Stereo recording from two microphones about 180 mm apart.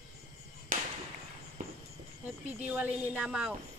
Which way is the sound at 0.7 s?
45° right (ahead or behind).